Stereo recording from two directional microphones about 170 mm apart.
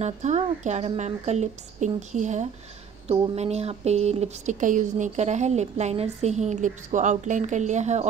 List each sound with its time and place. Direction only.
0.0 s a woman's voice: 40° right (ahead or behind)